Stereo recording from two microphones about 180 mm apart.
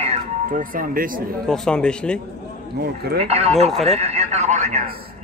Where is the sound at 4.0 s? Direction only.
35° right (ahead or behind).